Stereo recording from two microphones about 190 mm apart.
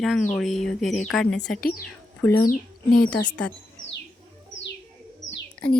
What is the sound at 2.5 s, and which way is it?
Speech, 50° left (ahead or behind).